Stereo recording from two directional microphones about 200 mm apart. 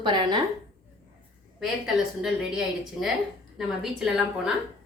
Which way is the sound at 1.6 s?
Centre (ahead or behind).